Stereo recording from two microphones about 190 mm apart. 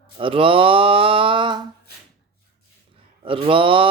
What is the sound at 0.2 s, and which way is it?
Speech, 30° right (ahead or behind).